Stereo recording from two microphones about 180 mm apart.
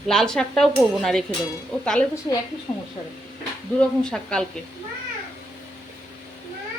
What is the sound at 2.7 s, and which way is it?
Speech, 20° left (ahead or behind).